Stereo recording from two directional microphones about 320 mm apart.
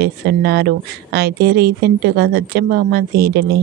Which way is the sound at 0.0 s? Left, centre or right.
Right.